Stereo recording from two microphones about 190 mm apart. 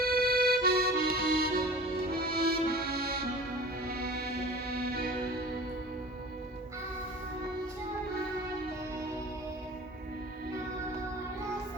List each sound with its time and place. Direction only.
0.0 s accordion: 50° right (ahead or behind)
2.2 s music: 55° right (ahead or behind)